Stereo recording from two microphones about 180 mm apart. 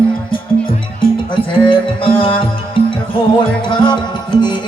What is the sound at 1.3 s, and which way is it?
Music, 30° left (ahead or behind).